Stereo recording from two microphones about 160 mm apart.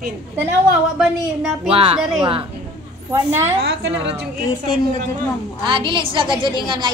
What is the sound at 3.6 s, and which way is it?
Speech, 90° right.